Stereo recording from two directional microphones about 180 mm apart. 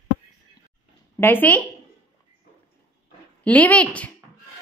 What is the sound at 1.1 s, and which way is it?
Speech, 10° left (ahead or behind).